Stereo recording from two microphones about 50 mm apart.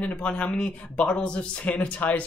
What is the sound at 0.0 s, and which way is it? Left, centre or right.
Speech, left.